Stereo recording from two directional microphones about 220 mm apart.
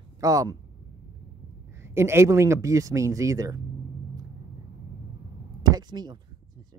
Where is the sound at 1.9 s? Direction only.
10° right (ahead or behind).